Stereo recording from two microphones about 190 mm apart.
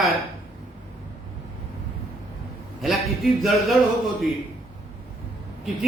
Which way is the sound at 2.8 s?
Centre (ahead or behind).